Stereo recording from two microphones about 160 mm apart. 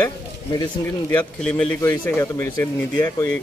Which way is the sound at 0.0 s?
25° left (ahead or behind).